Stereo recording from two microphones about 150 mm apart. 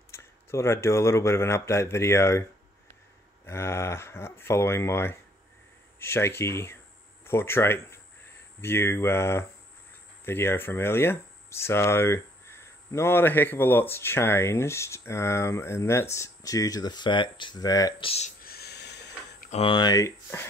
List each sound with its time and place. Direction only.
0.1 s speech: 20° left (ahead or behind)
3.4 s speech: 15° left (ahead or behind)
18.0 s speech: 45° left (ahead or behind)
18.4 s a sound: 90° left
19.5 s speech: 35° left (ahead or behind)